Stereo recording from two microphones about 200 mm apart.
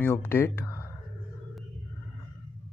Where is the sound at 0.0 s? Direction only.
10° left (ahead or behind).